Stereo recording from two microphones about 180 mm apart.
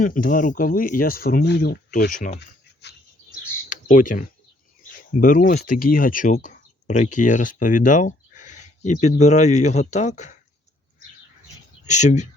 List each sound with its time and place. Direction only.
0.0 s speech: 50° left (ahead or behind)
3.7 s a sound: 45° left (ahead or behind)
5.2 s speech: 50° left (ahead or behind)
11.9 s speech: 40° left (ahead or behind)